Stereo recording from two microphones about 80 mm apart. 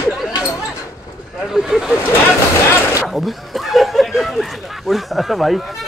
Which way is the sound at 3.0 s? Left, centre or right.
Centre.